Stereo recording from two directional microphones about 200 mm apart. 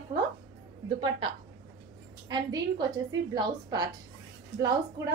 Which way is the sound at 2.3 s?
20° right (ahead or behind).